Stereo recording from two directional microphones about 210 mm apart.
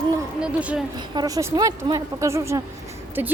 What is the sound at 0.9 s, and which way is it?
A woman's voice, 20° right (ahead or behind).